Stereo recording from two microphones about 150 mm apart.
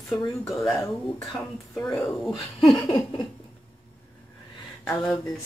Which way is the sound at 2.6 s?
35° left (ahead or behind).